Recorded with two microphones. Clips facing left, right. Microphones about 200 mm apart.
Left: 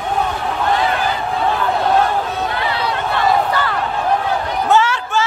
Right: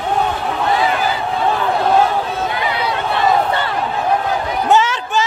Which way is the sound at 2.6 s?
15° right (ahead or behind).